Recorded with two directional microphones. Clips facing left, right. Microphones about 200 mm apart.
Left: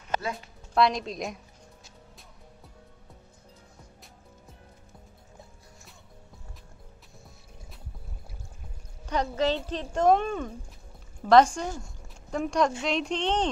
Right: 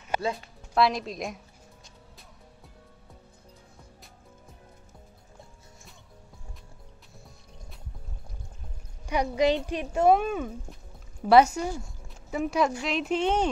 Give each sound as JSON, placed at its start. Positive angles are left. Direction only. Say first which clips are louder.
{"t": 0.1, "sound": "music", "louder": "right 2 dB", "side_deg": -10}
{"t": 0.7, "sound": "a woman's voice", "louder": "even", "side_deg": 0}
{"t": 9.0, "sound": "a woman's voice", "louder": "right 3 dB", "side_deg": -10}